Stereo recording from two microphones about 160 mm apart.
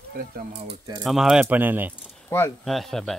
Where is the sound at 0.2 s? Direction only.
65° right (ahead or behind).